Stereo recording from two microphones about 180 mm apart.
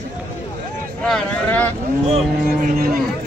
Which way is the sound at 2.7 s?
55° right (ahead or behind).